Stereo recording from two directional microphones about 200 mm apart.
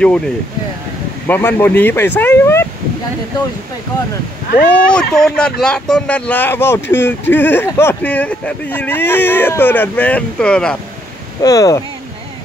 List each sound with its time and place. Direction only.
1.2 s speech: 10° left (ahead or behind)
4.6 s speech: 5° left (ahead or behind)
11.4 s speech: 15° left (ahead or behind)